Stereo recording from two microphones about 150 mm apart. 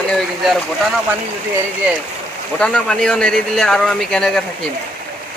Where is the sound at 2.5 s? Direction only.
5° left (ahead or behind).